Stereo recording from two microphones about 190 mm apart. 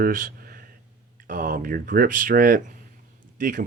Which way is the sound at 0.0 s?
45° right (ahead or behind).